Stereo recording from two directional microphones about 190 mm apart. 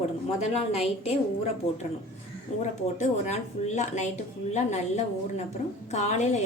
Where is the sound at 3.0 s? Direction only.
40° left (ahead or behind).